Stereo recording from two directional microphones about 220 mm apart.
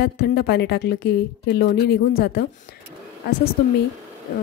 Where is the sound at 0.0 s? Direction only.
45° left (ahead or behind).